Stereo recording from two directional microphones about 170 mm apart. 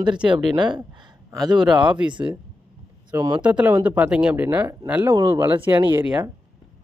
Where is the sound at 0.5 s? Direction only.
25° right (ahead or behind).